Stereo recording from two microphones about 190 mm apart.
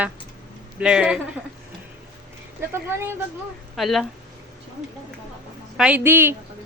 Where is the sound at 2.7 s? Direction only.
10° right (ahead or behind).